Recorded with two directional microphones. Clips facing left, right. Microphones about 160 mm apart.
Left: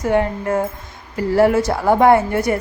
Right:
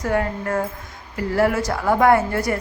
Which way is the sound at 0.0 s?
20° left (ahead or behind).